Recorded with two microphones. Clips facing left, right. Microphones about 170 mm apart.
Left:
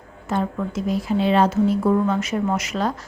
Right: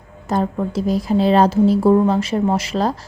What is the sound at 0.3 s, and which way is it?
A woman's voice, 35° right (ahead or behind).